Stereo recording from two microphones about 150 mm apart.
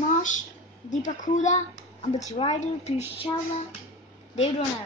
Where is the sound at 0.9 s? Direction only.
55° left (ahead or behind).